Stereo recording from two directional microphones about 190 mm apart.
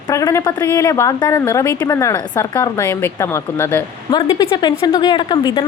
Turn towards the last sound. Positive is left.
turn(degrees=25)  # may be behind; listen again after turning